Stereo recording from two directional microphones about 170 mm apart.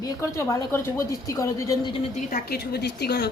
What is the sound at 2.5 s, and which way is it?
Speech, 70° left (ahead or behind).